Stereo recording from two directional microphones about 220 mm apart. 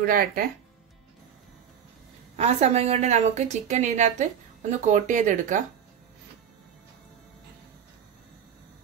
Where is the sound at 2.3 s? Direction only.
30° right (ahead or behind).